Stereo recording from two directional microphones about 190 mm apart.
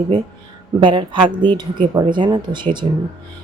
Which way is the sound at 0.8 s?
25° right (ahead or behind).